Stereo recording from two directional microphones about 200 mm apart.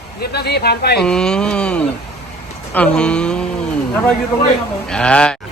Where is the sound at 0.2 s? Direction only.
55° left (ahead or behind).